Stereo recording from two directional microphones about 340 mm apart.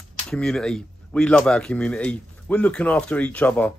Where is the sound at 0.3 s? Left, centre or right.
Centre.